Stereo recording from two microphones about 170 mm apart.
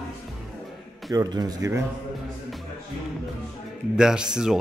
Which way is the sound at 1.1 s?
20° right (ahead or behind).